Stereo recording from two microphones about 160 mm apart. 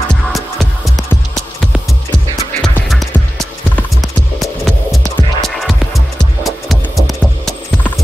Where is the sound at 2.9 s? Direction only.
Centre (ahead or behind).